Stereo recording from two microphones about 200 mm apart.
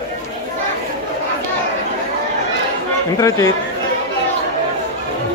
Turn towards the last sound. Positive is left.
turn(degrees=15)  # may be behind; listen again after turning